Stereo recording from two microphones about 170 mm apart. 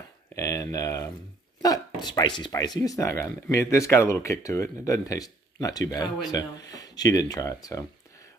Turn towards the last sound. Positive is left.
turn(degrees=20)  # may be behind; listen again after turning